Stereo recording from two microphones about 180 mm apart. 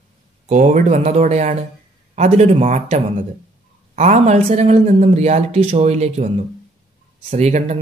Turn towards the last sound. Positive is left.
turn(degrees=-40)  # may be behind; listen again after turning